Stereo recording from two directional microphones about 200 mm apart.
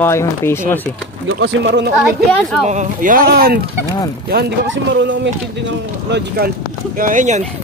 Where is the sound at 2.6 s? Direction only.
40° right (ahead or behind); by 6.4 s 60° right (ahead or behind).